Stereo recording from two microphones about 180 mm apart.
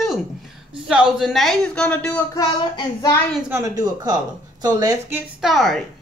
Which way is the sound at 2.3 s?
20° left (ahead or behind).